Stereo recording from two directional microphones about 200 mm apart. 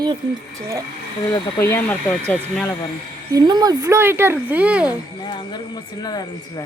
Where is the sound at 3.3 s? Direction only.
20° right (ahead or behind).